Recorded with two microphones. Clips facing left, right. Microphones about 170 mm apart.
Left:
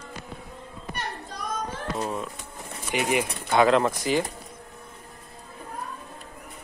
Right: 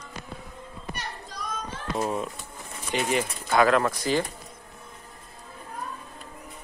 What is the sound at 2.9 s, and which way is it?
Speech, 15° left (ahead or behind).